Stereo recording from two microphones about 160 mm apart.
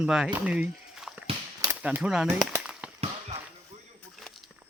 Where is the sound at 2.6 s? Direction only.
5° right (ahead or behind).